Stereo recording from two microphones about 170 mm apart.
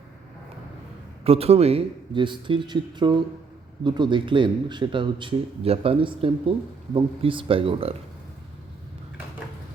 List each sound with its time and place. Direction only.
1.2 s speech: 35° right (ahead or behind)